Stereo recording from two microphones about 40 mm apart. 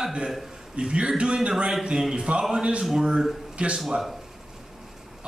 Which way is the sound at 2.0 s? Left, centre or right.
Centre.